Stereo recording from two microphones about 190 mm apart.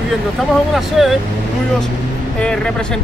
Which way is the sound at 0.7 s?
Centre (ahead or behind).